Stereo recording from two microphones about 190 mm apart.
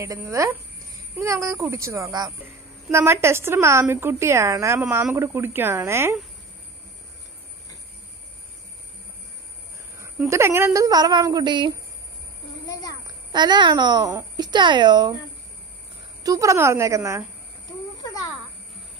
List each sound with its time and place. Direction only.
0.0 s a woman's voice: 15° right (ahead or behind)
9.9 s a woman's voice: 10° right (ahead or behind)
12.6 s a child's voice: 20° left (ahead or behind)
13.3 s a child's voice: 25° right (ahead or behind)
16.2 s a woman's voice: 20° right (ahead or behind)
18.0 s a sound: 20° left (ahead or behind)